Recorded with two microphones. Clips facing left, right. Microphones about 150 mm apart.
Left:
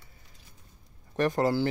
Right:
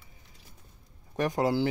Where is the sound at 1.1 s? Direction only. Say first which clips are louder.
Left 1 dB; 10° right (ahead or behind).